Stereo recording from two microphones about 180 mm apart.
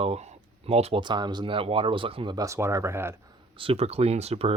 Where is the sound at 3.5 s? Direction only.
30° right (ahead or behind).